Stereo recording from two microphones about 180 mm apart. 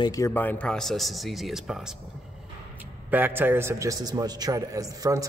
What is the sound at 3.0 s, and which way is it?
A man's voice, 10° right (ahead or behind).